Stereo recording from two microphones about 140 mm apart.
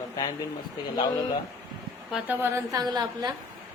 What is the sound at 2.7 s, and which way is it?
Speech, 30° right (ahead or behind).